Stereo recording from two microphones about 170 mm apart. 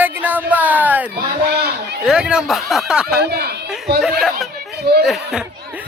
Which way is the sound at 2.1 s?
5° right (ahead or behind).